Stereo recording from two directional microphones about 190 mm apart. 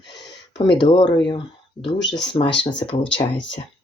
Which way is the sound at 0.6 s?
25° left (ahead or behind).